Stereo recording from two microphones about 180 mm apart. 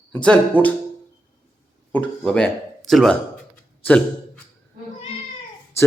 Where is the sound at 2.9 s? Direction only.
5° left (ahead or behind).